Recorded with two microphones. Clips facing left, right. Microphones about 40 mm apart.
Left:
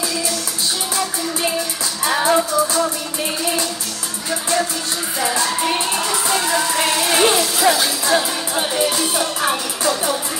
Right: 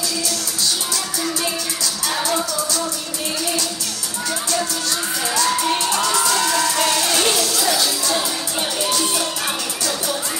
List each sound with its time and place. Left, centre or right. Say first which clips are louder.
2.0 s music: left 6 dB; left
6.2 s music: even; left